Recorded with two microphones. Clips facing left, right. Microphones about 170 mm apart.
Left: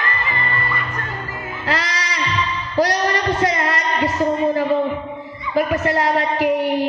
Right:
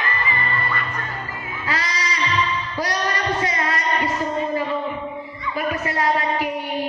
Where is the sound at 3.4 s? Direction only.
75° left (ahead or behind).